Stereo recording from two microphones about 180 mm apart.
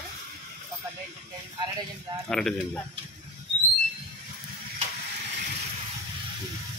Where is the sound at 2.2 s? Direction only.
5° left (ahead or behind).